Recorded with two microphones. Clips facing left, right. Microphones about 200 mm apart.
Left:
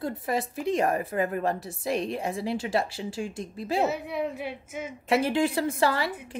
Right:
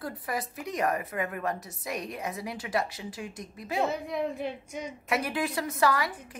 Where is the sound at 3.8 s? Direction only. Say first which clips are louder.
Even; 5° left (ahead or behind).